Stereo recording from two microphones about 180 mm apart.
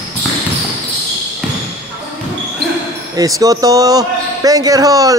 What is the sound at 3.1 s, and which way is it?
A man's voice, 20° right (ahead or behind).